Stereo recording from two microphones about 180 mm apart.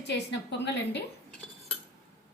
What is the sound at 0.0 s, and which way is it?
A woman's voice, 70° left (ahead or behind).